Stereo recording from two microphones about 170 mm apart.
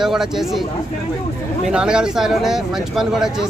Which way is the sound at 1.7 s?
5° right (ahead or behind).